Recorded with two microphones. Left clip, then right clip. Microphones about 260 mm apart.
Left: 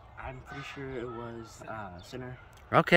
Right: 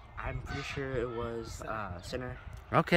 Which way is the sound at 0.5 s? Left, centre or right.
Right.